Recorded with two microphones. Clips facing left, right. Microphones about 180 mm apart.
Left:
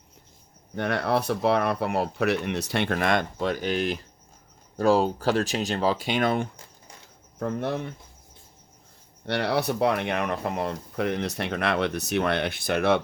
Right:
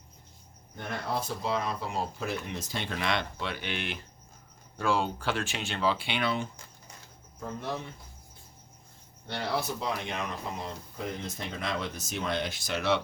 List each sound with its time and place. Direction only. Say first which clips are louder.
0.8 s speech: left 9 dB; 75° left (ahead or behind); by 6.5 s 50° left (ahead or behind)
7.3 s speech: left 8 dB; 65° left (ahead or behind)
9.2 s speech: left 7 dB; 70° left (ahead or behind); by 13.0 s 55° left (ahead or behind)